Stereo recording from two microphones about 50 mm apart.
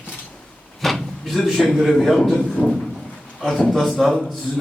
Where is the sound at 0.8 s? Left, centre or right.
Centre.